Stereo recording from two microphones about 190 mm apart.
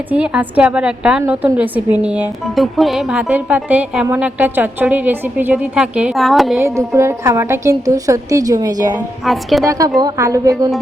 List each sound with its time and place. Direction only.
0.1 s a woman's voice: 5° right (ahead or behind)
6.6 s a woman's voice: 15° right (ahead or behind)
9.2 s a woman's voice: centre (ahead or behind)
9.6 s a woman's voice: 15° right (ahead or behind)